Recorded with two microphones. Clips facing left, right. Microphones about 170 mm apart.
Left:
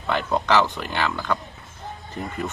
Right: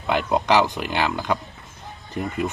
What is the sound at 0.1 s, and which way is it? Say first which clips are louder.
Speech: right 2 dB; 15° right (ahead or behind).